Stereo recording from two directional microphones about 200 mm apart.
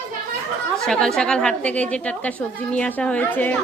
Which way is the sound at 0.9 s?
5° left (ahead or behind).